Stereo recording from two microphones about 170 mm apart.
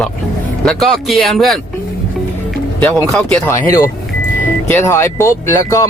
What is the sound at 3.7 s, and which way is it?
Speech, 20° left (ahead or behind).